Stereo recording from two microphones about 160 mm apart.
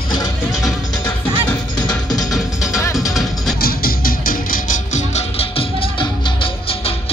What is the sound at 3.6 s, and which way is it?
Music, 70° left (ahead or behind).